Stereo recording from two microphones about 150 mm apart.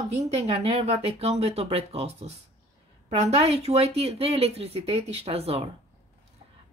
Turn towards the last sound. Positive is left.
turn(degrees=-40)  # may be behind; listen again after turning